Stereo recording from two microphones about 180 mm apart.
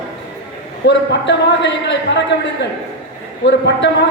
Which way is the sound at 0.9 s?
75° left (ahead or behind).